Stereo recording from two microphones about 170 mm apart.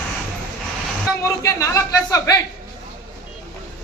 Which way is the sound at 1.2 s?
20° left (ahead or behind).